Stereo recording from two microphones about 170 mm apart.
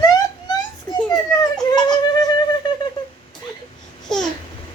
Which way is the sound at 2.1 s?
25° left (ahead or behind).